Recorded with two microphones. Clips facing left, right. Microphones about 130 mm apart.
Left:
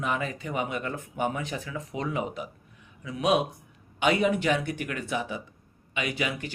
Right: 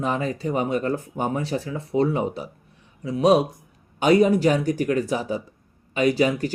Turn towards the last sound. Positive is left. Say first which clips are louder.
# right 11 dB
turn(degrees=-40)  # may be behind; listen again after turning